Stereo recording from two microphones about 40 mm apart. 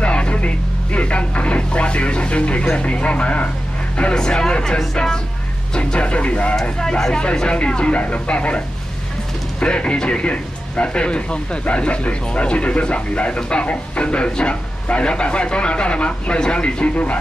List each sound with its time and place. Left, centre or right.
0.0 s a sound: left
0.9 s speech: left
4.1 s speech: centre
5.8 s speech: left
6.8 s speech: centre
7.2 s speech: left